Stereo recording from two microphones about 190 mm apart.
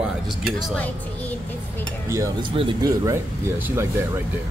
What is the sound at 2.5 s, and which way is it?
Speech, 25° right (ahead or behind).